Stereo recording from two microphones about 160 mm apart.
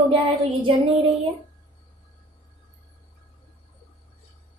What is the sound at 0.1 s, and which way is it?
Child singing, 30° right (ahead or behind).